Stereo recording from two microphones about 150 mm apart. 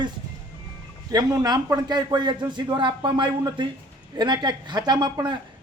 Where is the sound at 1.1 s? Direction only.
25° right (ahead or behind).